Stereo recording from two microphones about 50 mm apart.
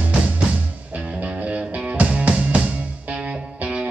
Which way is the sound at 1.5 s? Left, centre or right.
Right.